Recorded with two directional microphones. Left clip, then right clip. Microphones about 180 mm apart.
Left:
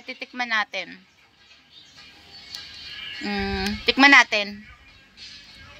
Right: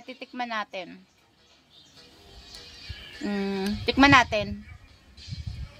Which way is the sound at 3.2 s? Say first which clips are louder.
Left 3 dB; 25° right (ahead or behind).